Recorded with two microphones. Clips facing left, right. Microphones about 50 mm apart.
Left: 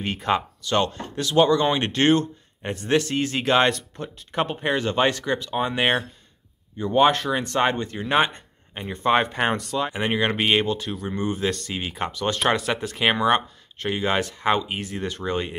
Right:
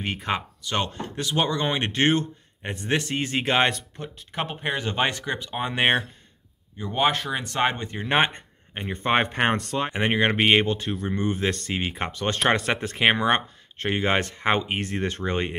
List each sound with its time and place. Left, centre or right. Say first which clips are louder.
0.0 s speech: left 4 dB; centre
6.8 s speech: left 5 dB; centre
7.7 s speech: left 2 dB; right
8.2 s a sound: left 1 dB; right
8.9 s speech: left 2 dB; right